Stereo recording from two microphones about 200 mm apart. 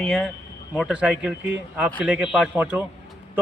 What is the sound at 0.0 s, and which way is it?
A man's voice, centre (ahead or behind).